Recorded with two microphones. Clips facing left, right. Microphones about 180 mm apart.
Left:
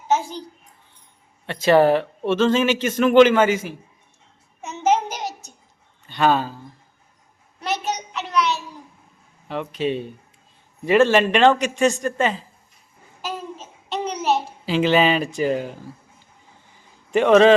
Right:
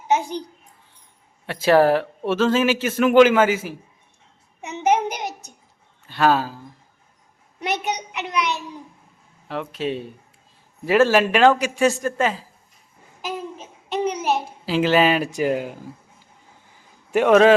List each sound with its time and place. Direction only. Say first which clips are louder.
0.1 s a child's voice: right 1 dB; 15° right (ahead or behind)
1.5 s speech: even; 5° right (ahead or behind)
4.6 s child singing: even; 15° right (ahead or behind)
6.1 s speech: even; 5° right (ahead or behind)
7.6 s a sound: even; 15° right (ahead or behind)
9.5 s a man's voice: left 2 dB; centre (ahead or behind)
13.9 s a sound: even; 10° right (ahead or behind)
17.1 s a man's voice: left 1 dB; 5° right (ahead or behind)